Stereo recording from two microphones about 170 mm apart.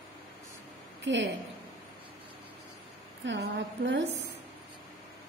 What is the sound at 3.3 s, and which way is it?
Speech, 90° right.